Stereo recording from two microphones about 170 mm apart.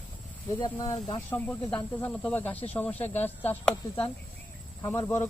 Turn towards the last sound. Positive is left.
turn(degrees=15)  # may be behind; listen again after turning